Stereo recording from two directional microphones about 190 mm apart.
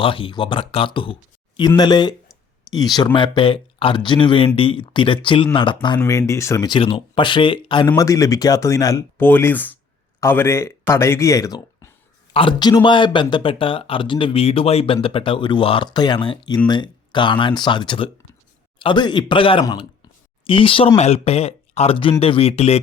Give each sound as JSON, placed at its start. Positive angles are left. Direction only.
{"t": 0.0, "sound": "speech", "side_deg": 25}